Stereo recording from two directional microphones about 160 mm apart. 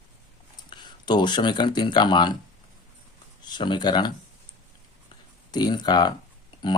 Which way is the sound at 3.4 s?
30° left (ahead or behind).